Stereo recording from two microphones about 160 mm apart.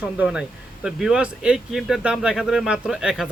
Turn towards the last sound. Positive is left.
turn(degrees=-5)  # may be behind; listen again after turning